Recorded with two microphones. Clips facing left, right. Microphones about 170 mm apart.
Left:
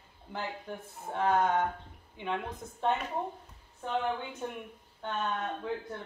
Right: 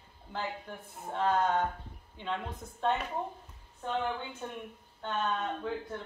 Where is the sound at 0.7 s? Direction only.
15° left (ahead or behind).